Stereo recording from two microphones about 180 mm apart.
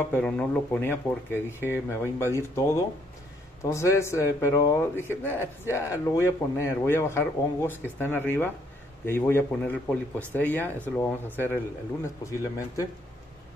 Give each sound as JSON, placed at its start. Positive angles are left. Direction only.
{"t": 0.0, "sound": "a man's voice", "side_deg": 10}